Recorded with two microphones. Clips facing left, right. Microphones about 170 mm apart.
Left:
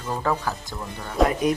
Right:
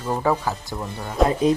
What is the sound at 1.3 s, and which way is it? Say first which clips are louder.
Speech: right 3 dB; 25° right (ahead or behind).